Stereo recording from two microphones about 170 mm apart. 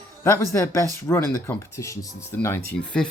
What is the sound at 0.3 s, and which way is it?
Speech, 15° left (ahead or behind).